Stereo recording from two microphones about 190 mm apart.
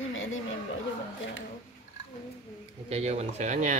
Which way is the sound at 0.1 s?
90° left.